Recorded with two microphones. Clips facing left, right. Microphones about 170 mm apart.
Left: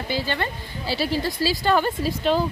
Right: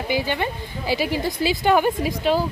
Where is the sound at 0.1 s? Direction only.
15° right (ahead or behind).